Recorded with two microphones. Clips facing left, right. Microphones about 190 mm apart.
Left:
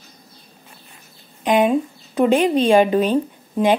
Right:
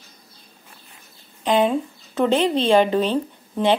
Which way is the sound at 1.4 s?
15° left (ahead or behind).